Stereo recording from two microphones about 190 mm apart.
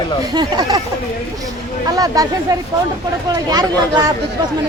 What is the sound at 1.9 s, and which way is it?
Speech, 20° right (ahead or behind).